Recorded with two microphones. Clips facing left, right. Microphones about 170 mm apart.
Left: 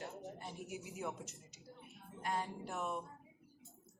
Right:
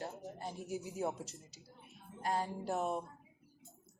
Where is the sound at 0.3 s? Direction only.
35° right (ahead or behind).